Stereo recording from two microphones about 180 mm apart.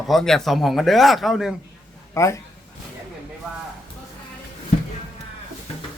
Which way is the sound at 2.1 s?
15° left (ahead or behind).